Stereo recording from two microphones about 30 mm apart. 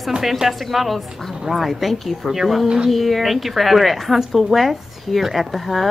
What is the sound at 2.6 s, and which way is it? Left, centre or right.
Speech, right.